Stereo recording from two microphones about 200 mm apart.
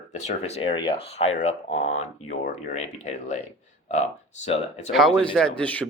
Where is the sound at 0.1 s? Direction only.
35° left (ahead or behind).